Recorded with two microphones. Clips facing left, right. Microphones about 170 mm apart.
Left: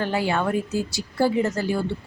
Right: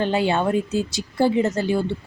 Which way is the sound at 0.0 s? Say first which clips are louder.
Right 3 dB; 20° right (ahead or behind).